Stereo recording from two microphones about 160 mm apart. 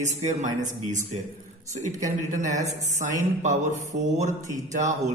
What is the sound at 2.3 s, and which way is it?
A man's voice, 50° right (ahead or behind).